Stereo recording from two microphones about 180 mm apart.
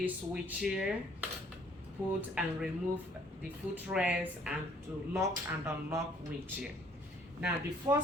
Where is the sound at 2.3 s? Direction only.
5° right (ahead or behind).